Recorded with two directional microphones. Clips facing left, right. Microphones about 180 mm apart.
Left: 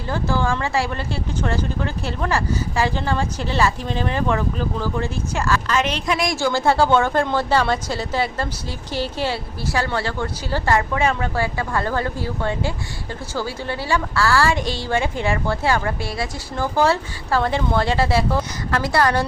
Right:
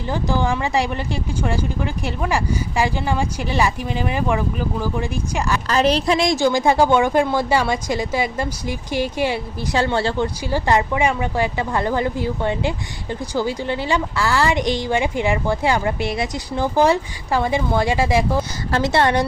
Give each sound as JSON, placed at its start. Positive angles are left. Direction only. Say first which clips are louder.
{"t": 0.1, "sound": "speech", "louder": "right 1 dB", "side_deg": -15}
{"t": 5.6, "sound": "a woman's voice", "louder": "right 4 dB", "side_deg": -35}